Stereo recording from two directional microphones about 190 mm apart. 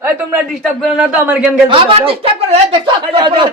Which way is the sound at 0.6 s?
Centre (ahead or behind).